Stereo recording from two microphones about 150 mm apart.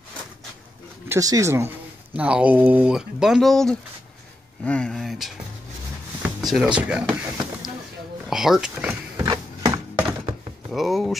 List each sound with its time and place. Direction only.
1.0 s speech: 20° right (ahead or behind); by 5.3 s centre (ahead or behind)
6.4 s speech: centre (ahead or behind)
8.3 s speech: centre (ahead or behind)
9.1 s a sound: 25° right (ahead or behind)
10.7 s speech: centre (ahead or behind)